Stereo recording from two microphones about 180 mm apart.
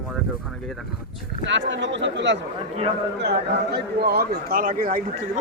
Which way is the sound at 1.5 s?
85° right.